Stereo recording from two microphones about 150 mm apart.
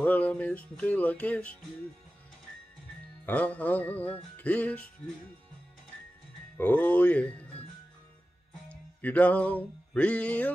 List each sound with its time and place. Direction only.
0.0 s music: 10° left (ahead or behind)
3.3 s music: 10° left (ahead or behind)
6.5 s speech: 10° left (ahead or behind)
8.6 s music: 10° left (ahead or behind)